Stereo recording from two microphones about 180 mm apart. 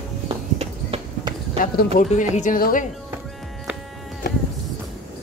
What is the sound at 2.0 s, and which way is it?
Speech, 45° left (ahead or behind).